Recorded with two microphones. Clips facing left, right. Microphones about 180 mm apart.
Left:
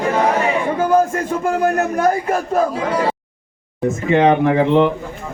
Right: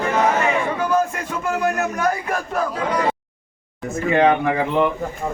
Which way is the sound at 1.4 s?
35° left (ahead or behind).